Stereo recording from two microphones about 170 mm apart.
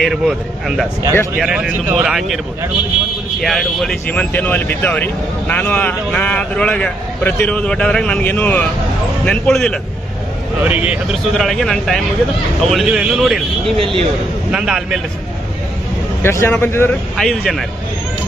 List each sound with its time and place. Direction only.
0.0 s speech: centre (ahead or behind)
10.6 s speech: 10° right (ahead or behind)
13.7 s a man's voice: 30° right (ahead or behind)
14.5 s speech: 5° right (ahead or behind)
16.2 s speech: 15° left (ahead or behind)
17.2 s speech: centre (ahead or behind)